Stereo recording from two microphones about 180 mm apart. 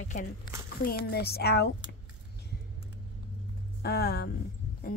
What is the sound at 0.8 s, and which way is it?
Speech, 60° left (ahead or behind).